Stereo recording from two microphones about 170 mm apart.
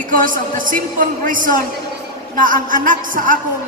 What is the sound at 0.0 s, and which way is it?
A man's voice, 50° right (ahead or behind).